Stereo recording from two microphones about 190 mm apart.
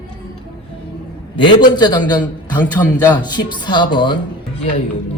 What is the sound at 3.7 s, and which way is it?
Speech, 25° left (ahead or behind).